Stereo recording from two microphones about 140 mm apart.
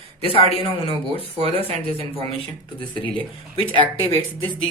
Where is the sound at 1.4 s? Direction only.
45° right (ahead or behind).